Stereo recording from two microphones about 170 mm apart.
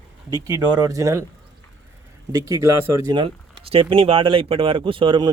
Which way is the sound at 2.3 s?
20° right (ahead or behind).